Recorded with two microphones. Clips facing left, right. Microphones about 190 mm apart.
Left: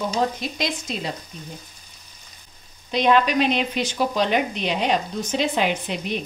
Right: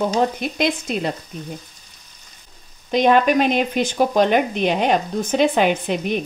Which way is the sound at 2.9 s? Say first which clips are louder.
Right 4 dB; 50° right (ahead or behind).